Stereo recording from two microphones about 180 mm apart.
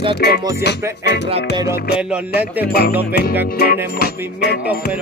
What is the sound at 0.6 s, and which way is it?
Music, 70° left (ahead or behind).